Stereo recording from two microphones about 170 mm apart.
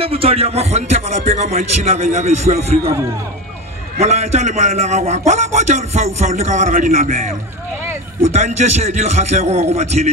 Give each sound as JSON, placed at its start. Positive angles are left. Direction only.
{"t": 0.0, "sound": "a man's voice", "side_deg": -35}
{"t": 4.0, "sound": "a man's voice", "side_deg": -40}
{"t": 8.3, "sound": "a man's voice", "side_deg": -45}